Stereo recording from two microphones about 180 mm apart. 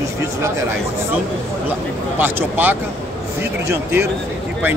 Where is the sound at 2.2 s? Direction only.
10° right (ahead or behind).